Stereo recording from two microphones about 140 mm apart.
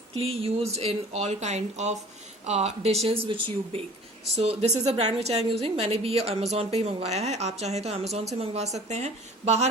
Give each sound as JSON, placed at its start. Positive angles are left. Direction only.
{"t": 0.2, "sound": "a woman's voice", "side_deg": -45}
{"t": 4.4, "sound": "a woman's voice", "side_deg": -50}